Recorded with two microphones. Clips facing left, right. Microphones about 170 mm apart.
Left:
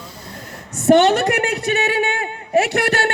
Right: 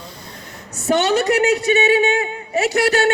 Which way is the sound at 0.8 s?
50° left (ahead or behind).